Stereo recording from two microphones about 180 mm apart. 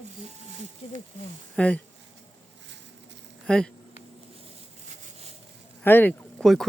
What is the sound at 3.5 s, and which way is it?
Speech, 5° left (ahead or behind).